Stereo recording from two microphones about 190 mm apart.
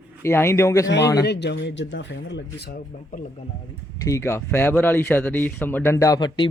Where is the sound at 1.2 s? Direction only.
65° left (ahead or behind).